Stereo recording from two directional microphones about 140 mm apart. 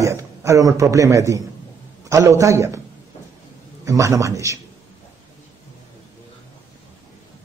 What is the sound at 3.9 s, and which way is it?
Speech, 25° right (ahead or behind).